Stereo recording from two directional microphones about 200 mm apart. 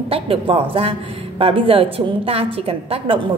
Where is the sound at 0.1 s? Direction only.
25° right (ahead or behind).